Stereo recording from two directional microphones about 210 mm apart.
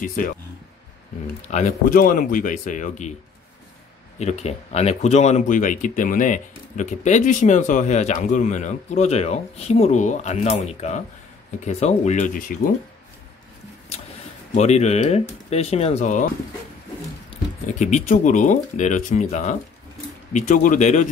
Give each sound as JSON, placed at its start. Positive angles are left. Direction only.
{"t": 0.0, "sound": "speech", "side_deg": 40}
{"t": 1.5, "sound": "speech", "side_deg": 35}
{"t": 4.2, "sound": "speech", "side_deg": 30}
{"t": 14.5, "sound": "speech", "side_deg": 30}
{"t": 17.7, "sound": "speech", "side_deg": 35}